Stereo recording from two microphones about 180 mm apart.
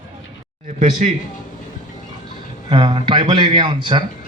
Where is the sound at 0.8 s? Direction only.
40° right (ahead or behind).